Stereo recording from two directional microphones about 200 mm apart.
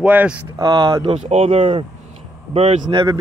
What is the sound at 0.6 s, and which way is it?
A man's voice, 25° right (ahead or behind).